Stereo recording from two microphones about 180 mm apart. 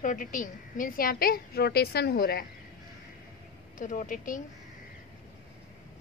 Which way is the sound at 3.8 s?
45° left (ahead or behind).